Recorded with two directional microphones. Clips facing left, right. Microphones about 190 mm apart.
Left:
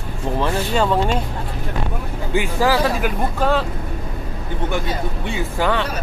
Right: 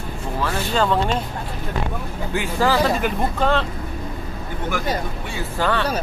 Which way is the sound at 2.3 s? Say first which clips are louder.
Left 2 dB; 10° left (ahead or behind).